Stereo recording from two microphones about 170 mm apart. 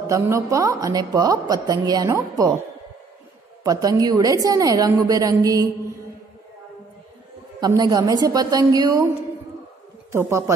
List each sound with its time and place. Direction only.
0.0 s a woman's voice: 20° right (ahead or behind)
3.6 s a woman's voice: 20° right (ahead or behind)
7.6 s a woman's voice: 25° right (ahead or behind)
10.1 s speech: 15° right (ahead or behind)